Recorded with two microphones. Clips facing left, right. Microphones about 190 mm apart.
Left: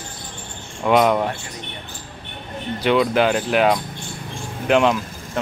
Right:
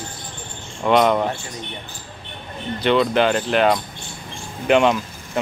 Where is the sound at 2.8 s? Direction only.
5° left (ahead or behind).